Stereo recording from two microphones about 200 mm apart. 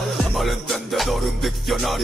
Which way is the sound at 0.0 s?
Centre (ahead or behind).